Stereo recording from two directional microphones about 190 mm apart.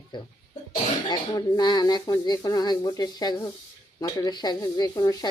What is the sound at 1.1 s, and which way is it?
Speech, 20° left (ahead or behind).